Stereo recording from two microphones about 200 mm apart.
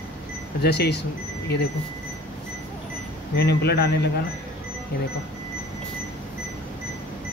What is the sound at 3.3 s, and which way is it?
Speech, 55° left (ahead or behind).